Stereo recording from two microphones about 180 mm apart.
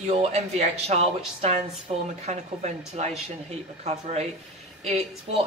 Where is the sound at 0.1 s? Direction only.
35° right (ahead or behind).